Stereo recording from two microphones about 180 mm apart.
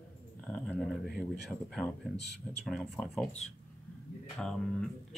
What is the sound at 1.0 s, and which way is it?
Speech, 60° left (ahead or behind).